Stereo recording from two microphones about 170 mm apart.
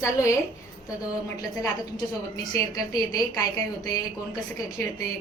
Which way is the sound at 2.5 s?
20° left (ahead or behind).